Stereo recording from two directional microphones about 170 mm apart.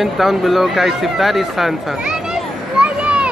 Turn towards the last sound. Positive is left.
turn(degrees=-5)  # may be behind; listen again after turning